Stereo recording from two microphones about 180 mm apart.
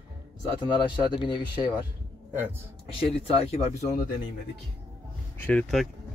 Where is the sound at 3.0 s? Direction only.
35° left (ahead or behind).